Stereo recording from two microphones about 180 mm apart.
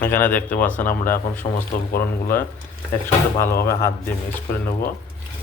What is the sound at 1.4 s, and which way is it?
Speech, 35° left (ahead or behind).